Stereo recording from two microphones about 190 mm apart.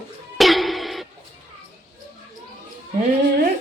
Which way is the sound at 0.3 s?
Centre (ahead or behind).